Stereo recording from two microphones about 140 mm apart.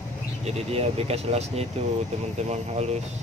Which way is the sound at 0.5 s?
45° right (ahead or behind).